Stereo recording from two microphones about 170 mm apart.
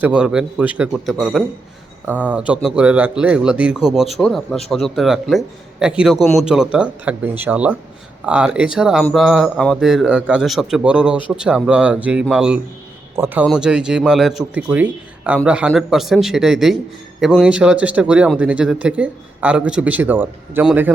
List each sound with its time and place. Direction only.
0.0 s a man's voice: 5° right (ahead or behind)